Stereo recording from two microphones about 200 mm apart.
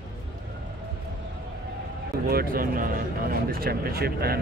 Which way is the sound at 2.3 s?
50° right (ahead or behind).